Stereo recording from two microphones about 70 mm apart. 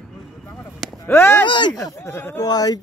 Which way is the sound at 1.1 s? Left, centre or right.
Left.